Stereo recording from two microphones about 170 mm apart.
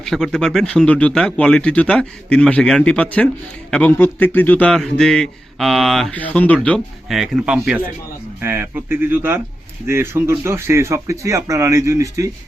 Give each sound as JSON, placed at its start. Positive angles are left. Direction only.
{"t": 0.0, "sound": "a man's voice", "side_deg": 5}